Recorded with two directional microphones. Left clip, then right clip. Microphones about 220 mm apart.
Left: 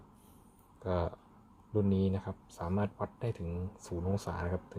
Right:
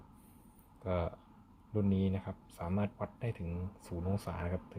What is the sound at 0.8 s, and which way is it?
Speech, 20° left (ahead or behind).